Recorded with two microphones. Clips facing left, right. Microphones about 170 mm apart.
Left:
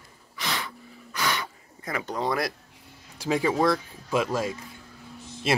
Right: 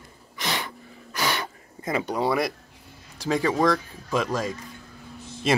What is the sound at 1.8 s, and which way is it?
Speech, 20° right (ahead or behind).